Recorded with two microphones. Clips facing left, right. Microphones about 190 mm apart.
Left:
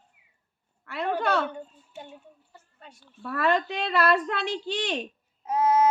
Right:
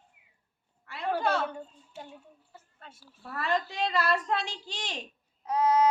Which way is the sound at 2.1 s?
Centre (ahead or behind).